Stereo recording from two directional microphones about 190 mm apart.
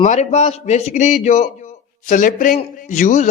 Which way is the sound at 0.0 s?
35° left (ahead or behind).